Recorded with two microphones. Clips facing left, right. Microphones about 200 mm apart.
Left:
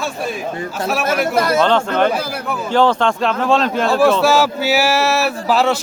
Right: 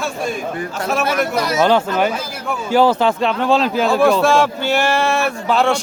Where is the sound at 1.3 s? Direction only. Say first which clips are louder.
Left 3 dB; 55° left (ahead or behind).